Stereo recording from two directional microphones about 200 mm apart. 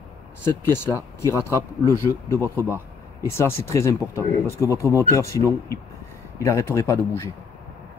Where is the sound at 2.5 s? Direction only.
10° right (ahead or behind).